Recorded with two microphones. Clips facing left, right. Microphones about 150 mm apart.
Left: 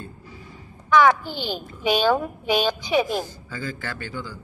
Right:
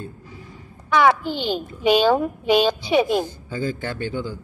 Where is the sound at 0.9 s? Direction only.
20° right (ahead or behind).